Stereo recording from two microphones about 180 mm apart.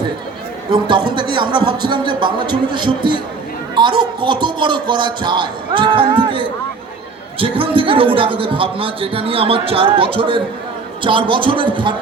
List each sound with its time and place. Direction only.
0.7 s speech: 25° right (ahead or behind)